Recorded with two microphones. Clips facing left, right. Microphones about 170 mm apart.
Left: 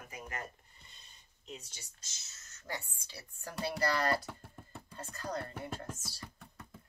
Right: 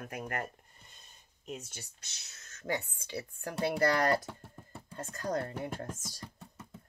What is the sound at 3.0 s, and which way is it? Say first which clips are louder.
Speech: right 9 dB; 55° right (ahead or behind).